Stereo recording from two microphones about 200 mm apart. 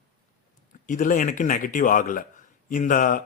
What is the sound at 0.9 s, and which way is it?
Speech, 40° left (ahead or behind).